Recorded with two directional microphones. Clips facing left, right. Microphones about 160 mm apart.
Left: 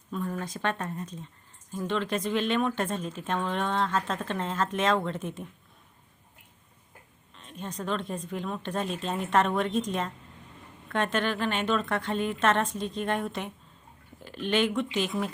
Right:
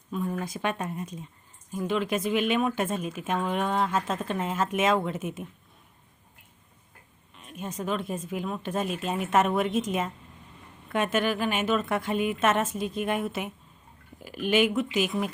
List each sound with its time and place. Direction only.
0.1 s speech: 10° right (ahead or behind)
7.3 s speech: 10° right (ahead or behind)